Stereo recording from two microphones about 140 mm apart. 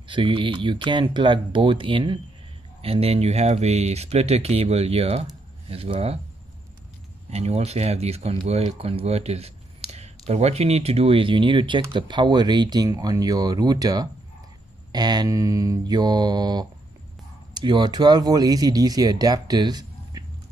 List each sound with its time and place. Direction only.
0.1 s speech: 35° right (ahead or behind)
7.2 s speech: 50° right (ahead or behind); by 20.2 s 30° right (ahead or behind)